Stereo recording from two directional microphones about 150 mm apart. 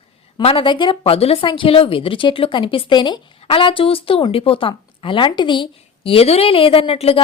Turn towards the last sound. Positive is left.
turn(degrees=40)  # may be behind; listen again after turning